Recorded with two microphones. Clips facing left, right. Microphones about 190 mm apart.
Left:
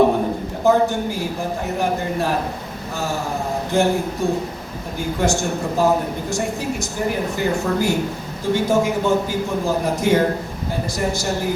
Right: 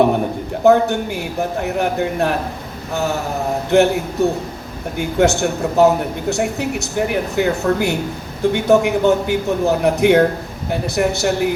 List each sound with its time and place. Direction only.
0.6 s a man's voice: 65° right (ahead or behind)